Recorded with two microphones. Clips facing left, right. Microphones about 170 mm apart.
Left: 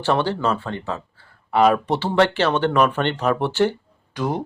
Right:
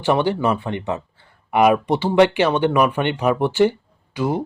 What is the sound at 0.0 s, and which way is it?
Speech, 15° right (ahead or behind).